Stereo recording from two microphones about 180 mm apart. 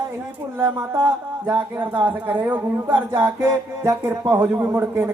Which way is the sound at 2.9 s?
15° right (ahead or behind).